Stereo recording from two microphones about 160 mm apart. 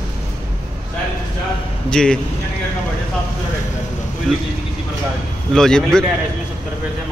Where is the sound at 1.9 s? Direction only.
5° left (ahead or behind).